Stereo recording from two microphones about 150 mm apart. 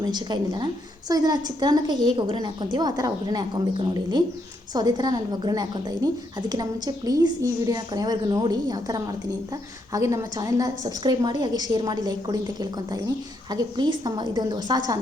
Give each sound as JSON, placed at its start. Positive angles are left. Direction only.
{"t": 0.0, "sound": "a woman's voice", "side_deg": -30}